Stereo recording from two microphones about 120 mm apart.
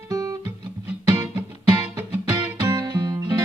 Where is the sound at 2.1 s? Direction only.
20° right (ahead or behind).